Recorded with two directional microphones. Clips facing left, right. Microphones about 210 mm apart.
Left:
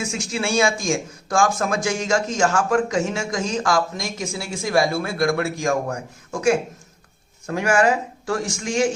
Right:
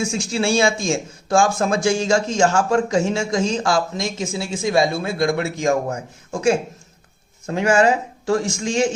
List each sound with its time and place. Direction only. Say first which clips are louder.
0.0 s a man's voice: right 4 dB; 30° right (ahead or behind)